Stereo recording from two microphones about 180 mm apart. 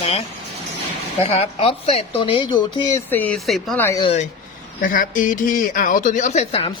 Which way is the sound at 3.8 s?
15° left (ahead or behind).